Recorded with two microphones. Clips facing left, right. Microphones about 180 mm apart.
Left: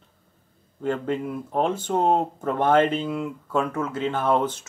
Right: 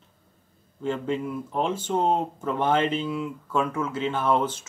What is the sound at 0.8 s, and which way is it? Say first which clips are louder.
Speech: left 2 dB; 55° left (ahead or behind).